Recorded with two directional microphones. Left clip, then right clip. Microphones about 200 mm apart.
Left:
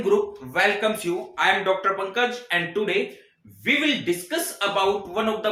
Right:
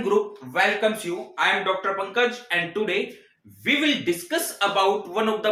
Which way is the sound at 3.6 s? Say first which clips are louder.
Even; 5° right (ahead or behind).